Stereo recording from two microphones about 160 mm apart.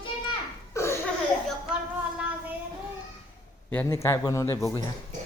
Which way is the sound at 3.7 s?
15° left (ahead or behind).